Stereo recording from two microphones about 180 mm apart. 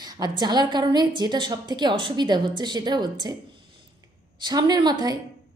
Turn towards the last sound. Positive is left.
turn(degrees=-20)  # may be behind; listen again after turning